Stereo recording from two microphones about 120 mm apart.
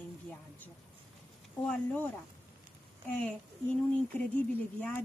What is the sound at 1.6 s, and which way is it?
Speech, 10° left (ahead or behind).